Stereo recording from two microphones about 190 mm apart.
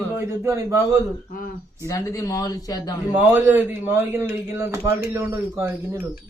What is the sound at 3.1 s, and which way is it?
A man's voice, 10° right (ahead or behind).